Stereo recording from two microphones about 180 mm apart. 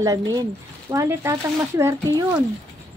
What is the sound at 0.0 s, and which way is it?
Speech, 20° right (ahead or behind).